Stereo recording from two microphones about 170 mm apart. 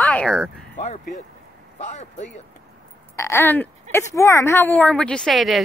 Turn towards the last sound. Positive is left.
turn(degrees=0)  # may be behind; listen again after turning